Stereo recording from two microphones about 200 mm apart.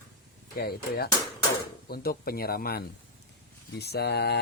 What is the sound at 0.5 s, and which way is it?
Speech, 50° left (ahead or behind).